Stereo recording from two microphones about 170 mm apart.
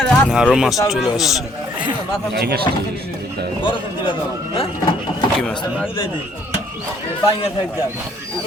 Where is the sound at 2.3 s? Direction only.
65° right (ahead or behind).